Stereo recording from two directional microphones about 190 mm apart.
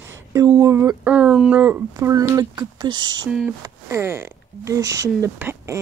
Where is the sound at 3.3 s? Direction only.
5° right (ahead or behind).